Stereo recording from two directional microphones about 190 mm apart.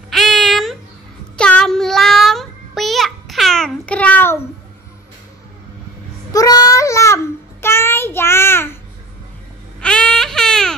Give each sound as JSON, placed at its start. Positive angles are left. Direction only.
{"t": 0.1, "sound": "a sound", "side_deg": 0}
{"t": 1.3, "sound": "child singing", "side_deg": 5}
{"t": 6.3, "sound": "babbling", "side_deg": 20}
{"t": 7.6, "sound": "child singing", "side_deg": 10}
{"t": 9.8, "sound": "baby cry", "side_deg": 5}